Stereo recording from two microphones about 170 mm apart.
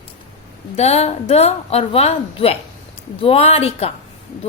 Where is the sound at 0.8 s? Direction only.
40° left (ahead or behind).